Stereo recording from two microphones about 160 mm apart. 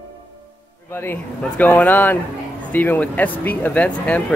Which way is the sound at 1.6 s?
10° left (ahead or behind).